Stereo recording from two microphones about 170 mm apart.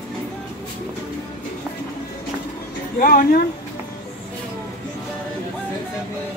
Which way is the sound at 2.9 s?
55° left (ahead or behind).